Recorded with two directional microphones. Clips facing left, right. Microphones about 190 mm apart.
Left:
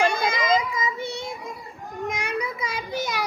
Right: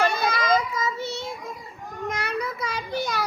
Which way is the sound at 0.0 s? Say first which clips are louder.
Left 1 dB; 15° left (ahead or behind).